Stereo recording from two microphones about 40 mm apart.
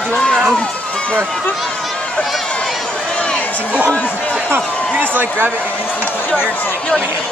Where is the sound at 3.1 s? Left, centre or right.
Left.